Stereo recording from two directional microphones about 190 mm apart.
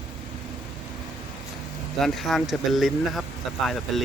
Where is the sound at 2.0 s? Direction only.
Centre (ahead or behind).